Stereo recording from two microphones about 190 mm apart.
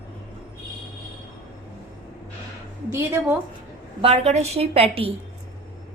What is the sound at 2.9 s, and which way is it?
Speech, 10° right (ahead or behind).